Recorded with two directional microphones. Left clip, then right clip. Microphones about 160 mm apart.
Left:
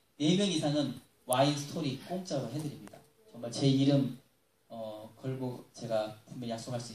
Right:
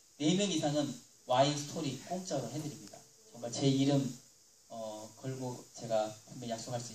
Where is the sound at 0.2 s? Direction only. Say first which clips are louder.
Left 2 dB; 15° left (ahead or behind).